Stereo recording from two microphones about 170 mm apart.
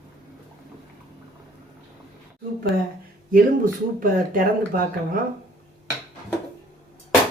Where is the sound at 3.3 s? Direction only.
55° right (ahead or behind).